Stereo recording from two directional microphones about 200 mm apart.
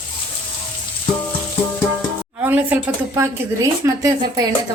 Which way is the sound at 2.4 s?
10° right (ahead or behind).